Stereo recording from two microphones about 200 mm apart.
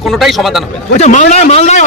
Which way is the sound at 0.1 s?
Centre (ahead or behind).